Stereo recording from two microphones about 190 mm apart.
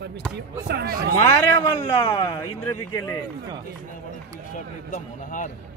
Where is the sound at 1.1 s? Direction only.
15° left (ahead or behind).